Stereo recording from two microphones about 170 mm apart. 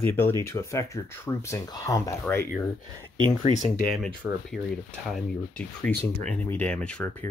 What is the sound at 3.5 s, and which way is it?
Speech, 30° right (ahead or behind).